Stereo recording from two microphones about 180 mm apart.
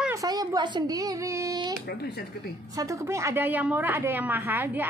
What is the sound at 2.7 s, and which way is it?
A woman's voice, 20° right (ahead or behind).